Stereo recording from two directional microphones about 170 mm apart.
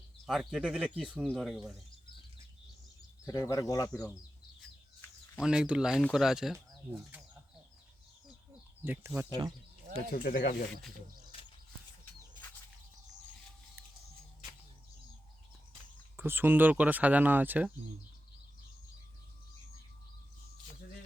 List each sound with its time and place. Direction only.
0.3 s speech: centre (ahead or behind)
3.2 s speech: 20° left (ahead or behind)
5.4 s speech: 5° right (ahead or behind)
8.8 s speech: 15° right (ahead or behind)
10.1 s speech: 55° left (ahead or behind)
16.1 s speech: 15° right (ahead or behind)